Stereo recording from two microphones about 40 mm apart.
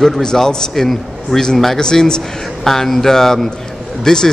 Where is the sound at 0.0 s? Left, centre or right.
Centre.